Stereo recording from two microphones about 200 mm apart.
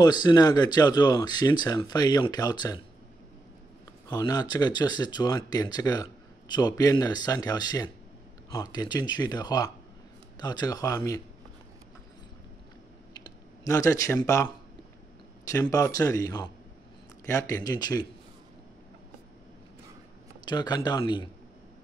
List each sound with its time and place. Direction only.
0.0 s speech: 20° left (ahead or behind)
4.1 s speech: 20° left (ahead or behind)
13.1 s typing: 20° left (ahead or behind)
15.4 s a man's voice: 15° left (ahead or behind)
20.4 s speech: 20° left (ahead or behind)